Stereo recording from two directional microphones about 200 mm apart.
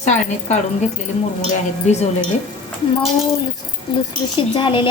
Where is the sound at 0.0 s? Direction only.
35° left (ahead or behind).